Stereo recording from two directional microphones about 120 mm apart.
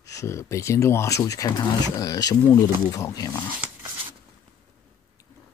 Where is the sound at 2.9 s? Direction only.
30° left (ahead or behind).